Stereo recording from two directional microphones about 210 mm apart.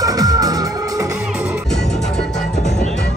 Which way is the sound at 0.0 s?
15° right (ahead or behind).